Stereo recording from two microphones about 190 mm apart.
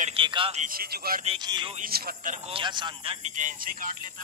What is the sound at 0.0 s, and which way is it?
Speech, 30° right (ahead or behind).